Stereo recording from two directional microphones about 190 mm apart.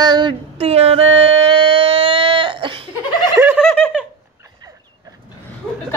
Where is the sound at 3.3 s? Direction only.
10° right (ahead or behind).